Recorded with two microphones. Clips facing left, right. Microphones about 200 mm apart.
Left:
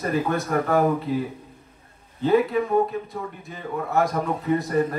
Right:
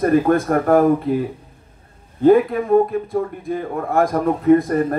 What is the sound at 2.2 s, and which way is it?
A man's voice, 50° right (ahead or behind).